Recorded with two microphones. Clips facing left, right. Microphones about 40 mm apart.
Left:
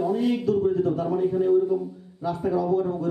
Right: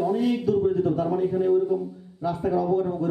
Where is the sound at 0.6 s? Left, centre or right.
Centre.